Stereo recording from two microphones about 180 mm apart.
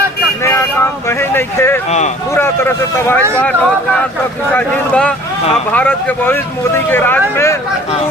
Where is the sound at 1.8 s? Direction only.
40° left (ahead or behind).